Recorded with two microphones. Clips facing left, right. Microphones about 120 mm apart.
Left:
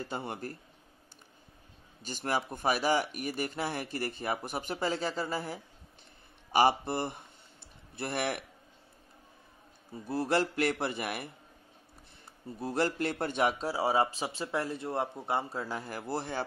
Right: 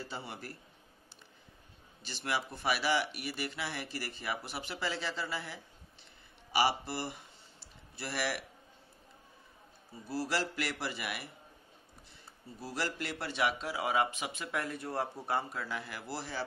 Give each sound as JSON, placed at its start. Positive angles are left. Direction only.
{"t": 0.0, "sound": "speech", "side_deg": 50}
{"t": 2.0, "sound": "speech", "side_deg": 45}
{"t": 10.0, "sound": "speech", "side_deg": 50}
{"t": 12.5, "sound": "speech", "side_deg": 50}
{"t": 15.6, "sound": "speech", "side_deg": 40}